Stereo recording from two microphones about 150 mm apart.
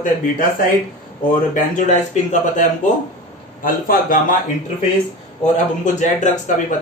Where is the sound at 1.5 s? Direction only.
55° left (ahead or behind).